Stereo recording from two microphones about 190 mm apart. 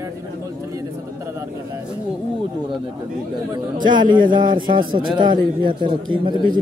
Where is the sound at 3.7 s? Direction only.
25° right (ahead or behind).